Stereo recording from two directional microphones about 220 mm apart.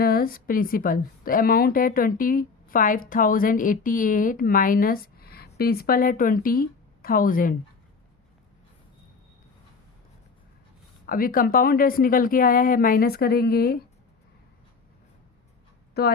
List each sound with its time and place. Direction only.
0.0 s speech: 40° left (ahead or behind)
11.0 s speech: 40° left (ahead or behind)
16.0 s speech: 45° left (ahead or behind)